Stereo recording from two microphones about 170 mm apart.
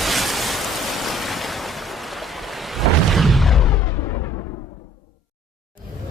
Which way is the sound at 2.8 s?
Centre (ahead or behind).